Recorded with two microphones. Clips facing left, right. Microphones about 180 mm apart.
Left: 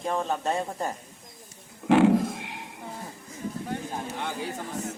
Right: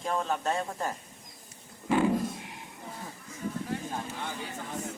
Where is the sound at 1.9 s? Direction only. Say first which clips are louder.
Left 6 dB; 75° left (ahead or behind).